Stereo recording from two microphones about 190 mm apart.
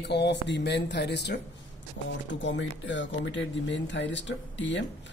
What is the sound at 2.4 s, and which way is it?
A man's voice, 75° left (ahead or behind).